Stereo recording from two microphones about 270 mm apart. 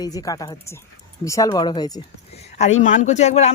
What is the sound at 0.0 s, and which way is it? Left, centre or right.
A woman's voice, centre.